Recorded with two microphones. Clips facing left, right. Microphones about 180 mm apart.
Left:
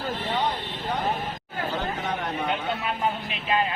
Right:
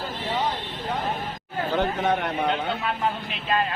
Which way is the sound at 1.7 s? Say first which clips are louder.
Right 8 dB; 65° right (ahead or behind).